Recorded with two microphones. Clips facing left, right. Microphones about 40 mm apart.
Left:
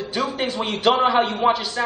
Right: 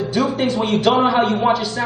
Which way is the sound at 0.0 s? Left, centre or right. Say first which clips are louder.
Right 5 dB; centre.